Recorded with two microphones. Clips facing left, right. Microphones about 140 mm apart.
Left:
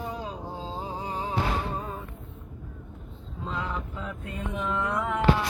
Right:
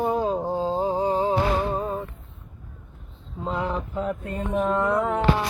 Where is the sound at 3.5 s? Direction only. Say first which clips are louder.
Right 6 dB; 30° right (ahead or behind).